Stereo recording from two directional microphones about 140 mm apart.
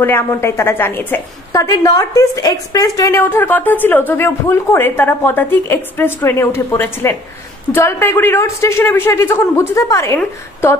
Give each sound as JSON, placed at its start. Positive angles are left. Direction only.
{"t": 0.0, "sound": "a woman's voice", "side_deg": 15}